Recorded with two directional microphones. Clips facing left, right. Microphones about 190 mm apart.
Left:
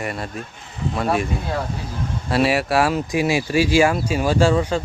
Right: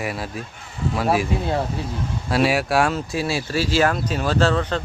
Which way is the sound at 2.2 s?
Centre (ahead or behind).